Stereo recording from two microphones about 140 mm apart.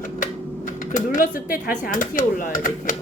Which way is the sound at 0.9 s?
75° left (ahead or behind).